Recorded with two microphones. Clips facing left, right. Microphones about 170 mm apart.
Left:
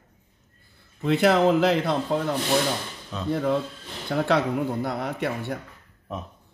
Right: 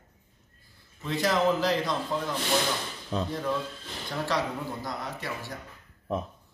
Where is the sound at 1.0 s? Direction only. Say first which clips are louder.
Left 6 dB; 60° left (ahead or behind).